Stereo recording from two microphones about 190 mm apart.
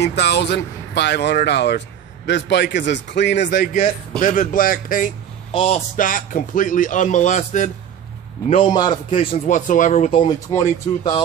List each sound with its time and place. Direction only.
0.0 s a man's voice: 65° left (ahead or behind)
3.4 s speech: 45° left (ahead or behind)
5.5 s speech: 30° left (ahead or behind)
5.9 s speech: 45° left (ahead or behind)
8.5 s speech: 25° left (ahead or behind)
9.5 s speech: 40° left (ahead or behind)
10.2 s speech: 20° left (ahead or behind)